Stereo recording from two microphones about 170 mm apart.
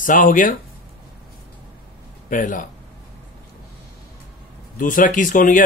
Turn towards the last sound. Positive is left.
turn(degrees=50)  # may be behind; listen again after turning